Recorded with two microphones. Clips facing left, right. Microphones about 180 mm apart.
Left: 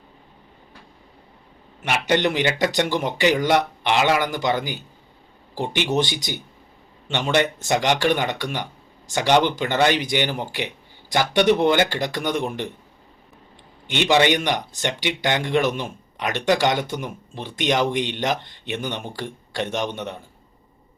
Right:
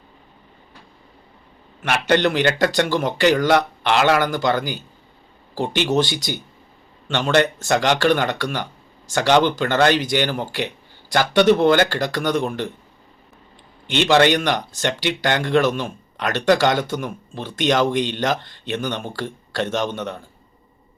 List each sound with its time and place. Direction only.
1.8 s speech: 15° left (ahead or behind)
13.9 s speech: 15° left (ahead or behind)